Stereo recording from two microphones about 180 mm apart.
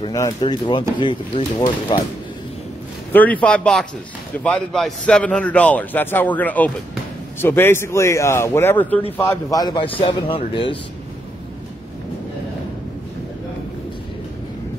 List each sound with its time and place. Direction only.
0.0 s speech: 20° left (ahead or behind)
3.1 s a man's voice: 10° left (ahead or behind); by 10.8 s 30° left (ahead or behind)